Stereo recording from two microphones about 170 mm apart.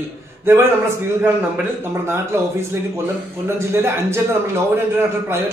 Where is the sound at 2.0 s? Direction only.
15° right (ahead or behind).